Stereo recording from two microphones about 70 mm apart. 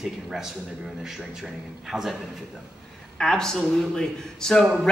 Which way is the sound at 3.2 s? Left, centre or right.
Centre.